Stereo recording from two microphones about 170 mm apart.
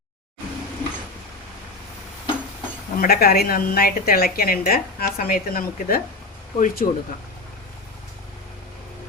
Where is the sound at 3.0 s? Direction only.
60° left (ahead or behind).